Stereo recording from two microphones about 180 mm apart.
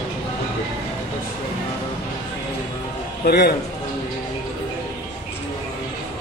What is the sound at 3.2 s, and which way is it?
Speech, 60° left (ahead or behind).